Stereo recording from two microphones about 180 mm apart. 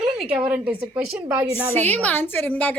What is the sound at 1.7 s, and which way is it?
A woman's voice, 10° left (ahead or behind).